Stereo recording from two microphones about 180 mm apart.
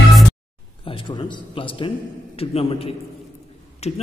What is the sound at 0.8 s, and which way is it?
A man's voice, 30° left (ahead or behind).